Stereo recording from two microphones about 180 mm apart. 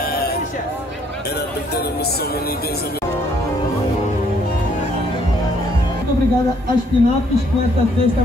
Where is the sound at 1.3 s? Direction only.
60° left (ahead or behind).